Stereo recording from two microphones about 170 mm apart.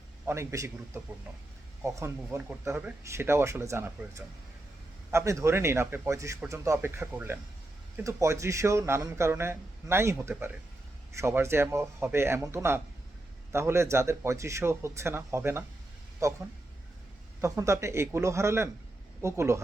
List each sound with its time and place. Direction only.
0.3 s a man's voice: 15° right (ahead or behind)
1.8 s a man's voice: 15° right (ahead or behind)
5.1 s a man's voice: 15° right (ahead or behind)
17.4 s a man's voice: 20° right (ahead or behind)